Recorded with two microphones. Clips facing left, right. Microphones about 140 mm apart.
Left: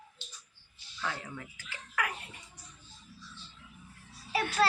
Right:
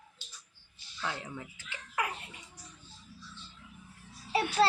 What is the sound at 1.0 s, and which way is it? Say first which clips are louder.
Speech: even; 20° right (ahead or behind).